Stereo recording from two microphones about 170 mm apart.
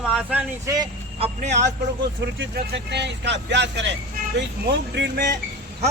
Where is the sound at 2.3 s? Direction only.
85° right.